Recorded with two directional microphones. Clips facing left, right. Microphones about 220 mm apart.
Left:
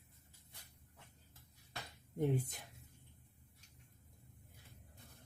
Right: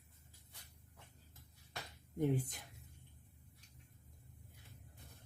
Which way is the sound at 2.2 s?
25° left (ahead or behind).